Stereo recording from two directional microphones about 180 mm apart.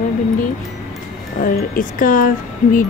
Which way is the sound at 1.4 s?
50° left (ahead or behind).